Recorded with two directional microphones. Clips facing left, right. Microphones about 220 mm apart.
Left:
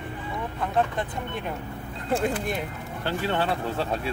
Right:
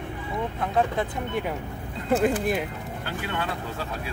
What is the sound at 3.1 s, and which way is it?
Speech, 30° left (ahead or behind).